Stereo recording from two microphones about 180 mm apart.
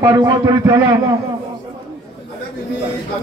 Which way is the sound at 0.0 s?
20° right (ahead or behind).